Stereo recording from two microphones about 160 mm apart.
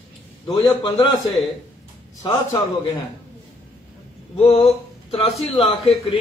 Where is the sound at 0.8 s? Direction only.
25° left (ahead or behind).